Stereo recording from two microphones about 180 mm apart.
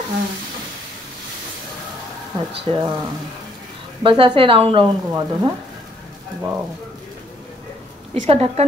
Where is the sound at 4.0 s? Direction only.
30° right (ahead or behind).